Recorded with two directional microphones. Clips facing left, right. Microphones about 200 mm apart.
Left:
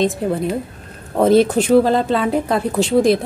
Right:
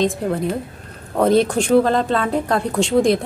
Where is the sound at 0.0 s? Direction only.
Centre (ahead or behind).